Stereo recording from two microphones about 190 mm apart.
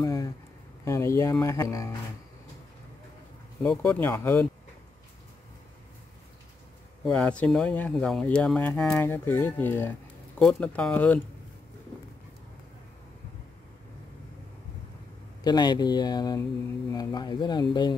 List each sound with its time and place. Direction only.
0.0 s a sound: 15° left (ahead or behind)
0.8 s speech: 15° left (ahead or behind)
3.6 s speech: 5° left (ahead or behind)
7.1 s speech: 5° left (ahead or behind)
15.4 s speech: 20° left (ahead or behind)